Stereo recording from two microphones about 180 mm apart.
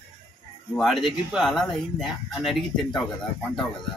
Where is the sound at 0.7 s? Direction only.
Centre (ahead or behind).